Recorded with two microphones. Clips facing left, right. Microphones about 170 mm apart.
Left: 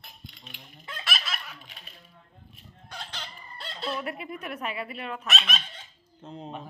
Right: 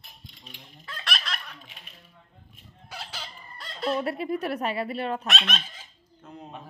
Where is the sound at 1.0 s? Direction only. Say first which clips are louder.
Right 1 dB; 5° left (ahead or behind).